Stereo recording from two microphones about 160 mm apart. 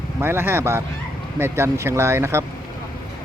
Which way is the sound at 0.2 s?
15° right (ahead or behind).